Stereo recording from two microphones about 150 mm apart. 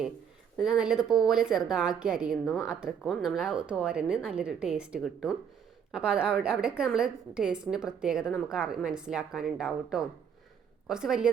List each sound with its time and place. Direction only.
0.5 s speech: 5° right (ahead or behind)